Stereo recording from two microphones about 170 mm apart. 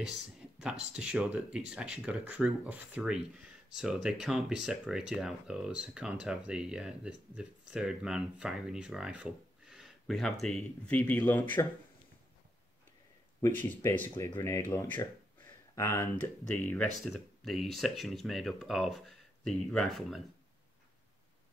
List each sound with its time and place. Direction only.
0.6 s speech: 5° right (ahead or behind); by 11.6 s 10° left (ahead or behind)
13.4 s speech: 10° left (ahead or behind)